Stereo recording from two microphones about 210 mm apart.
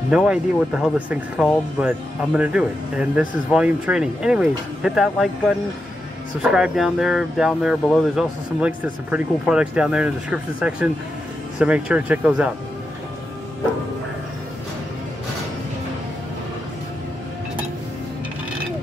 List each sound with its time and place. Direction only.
0.1 s speech: centre (ahead or behind)
6.5 s speech: centre (ahead or behind)